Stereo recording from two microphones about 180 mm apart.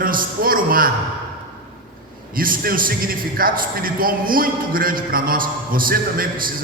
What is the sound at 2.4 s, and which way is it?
A man's voice, 50° right (ahead or behind).